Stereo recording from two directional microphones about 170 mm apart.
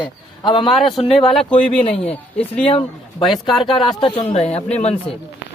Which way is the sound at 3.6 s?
30° left (ahead or behind).